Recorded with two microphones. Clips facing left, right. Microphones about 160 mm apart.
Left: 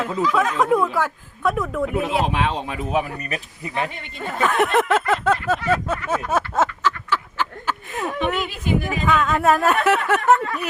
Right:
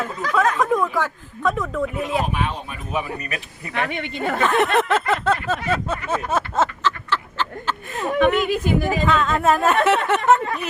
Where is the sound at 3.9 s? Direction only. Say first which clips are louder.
Right 6 dB; 75° right (ahead or behind).